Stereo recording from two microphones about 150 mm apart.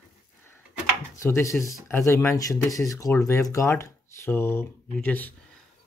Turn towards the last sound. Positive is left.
turn(degrees=10)  # may be behind; listen again after turning